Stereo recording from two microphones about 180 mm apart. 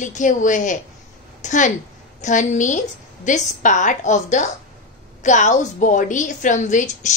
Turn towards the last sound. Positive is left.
turn(degrees=45)  # may be behind; listen again after turning